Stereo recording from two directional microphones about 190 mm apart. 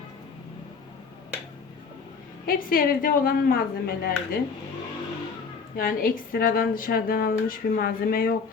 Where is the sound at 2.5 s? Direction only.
50° left (ahead or behind).